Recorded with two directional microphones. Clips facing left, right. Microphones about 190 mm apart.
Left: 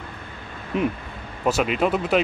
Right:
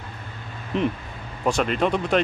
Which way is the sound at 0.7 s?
5° left (ahead or behind).